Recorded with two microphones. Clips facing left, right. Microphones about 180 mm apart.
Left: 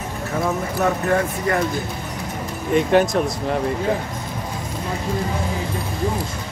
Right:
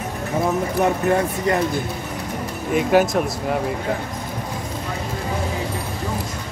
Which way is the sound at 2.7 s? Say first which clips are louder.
Left 1 dB; 5° right (ahead or behind).